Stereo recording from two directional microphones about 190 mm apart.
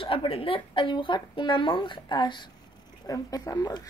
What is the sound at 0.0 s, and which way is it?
Speech, 30° left (ahead or behind).